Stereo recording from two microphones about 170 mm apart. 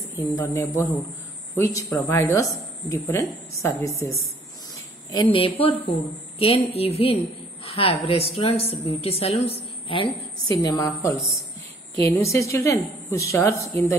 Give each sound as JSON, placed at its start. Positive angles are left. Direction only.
{"t": 0.2, "sound": "a woman's voice", "side_deg": 20}
{"t": 10.6, "sound": "a woman's voice", "side_deg": 20}